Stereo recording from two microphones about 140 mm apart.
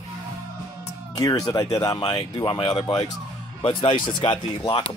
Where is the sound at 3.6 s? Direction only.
35° left (ahead or behind).